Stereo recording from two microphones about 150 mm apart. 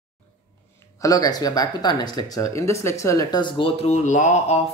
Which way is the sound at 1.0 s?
25° left (ahead or behind).